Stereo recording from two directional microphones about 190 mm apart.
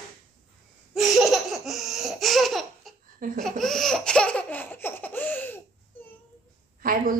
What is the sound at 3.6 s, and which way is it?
Laughter, centre (ahead or behind).